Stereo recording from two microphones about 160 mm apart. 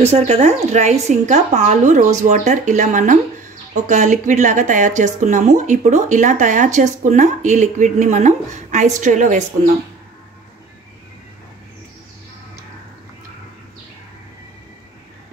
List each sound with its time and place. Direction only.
0.0 s speech: 40° right (ahead or behind)